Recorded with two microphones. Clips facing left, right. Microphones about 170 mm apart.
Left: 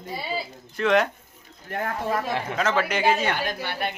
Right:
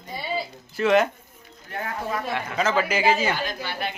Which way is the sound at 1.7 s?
50° left (ahead or behind).